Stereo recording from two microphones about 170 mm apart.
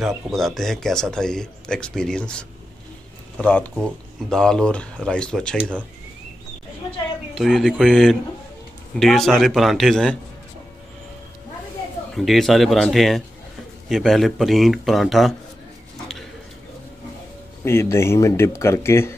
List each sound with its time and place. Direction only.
0.0 s speech: centre (ahead or behind)
7.3 s speech: centre (ahead or behind)
12.1 s speech: centre (ahead or behind)
17.6 s speech: 15° left (ahead or behind)